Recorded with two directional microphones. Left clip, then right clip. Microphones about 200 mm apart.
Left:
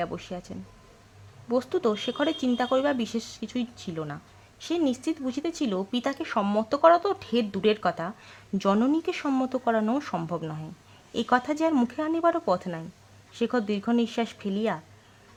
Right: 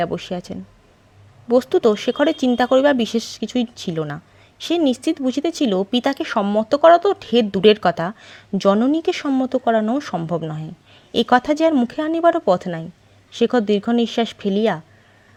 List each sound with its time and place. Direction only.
0.0 s speech: 30° right (ahead or behind)